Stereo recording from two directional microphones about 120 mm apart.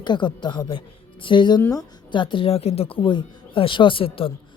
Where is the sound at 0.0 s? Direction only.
40° left (ahead or behind).